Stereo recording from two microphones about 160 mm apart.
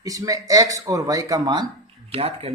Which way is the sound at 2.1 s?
40° right (ahead or behind).